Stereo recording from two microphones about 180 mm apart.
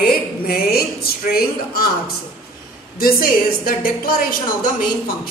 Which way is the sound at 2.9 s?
55° left (ahead or behind).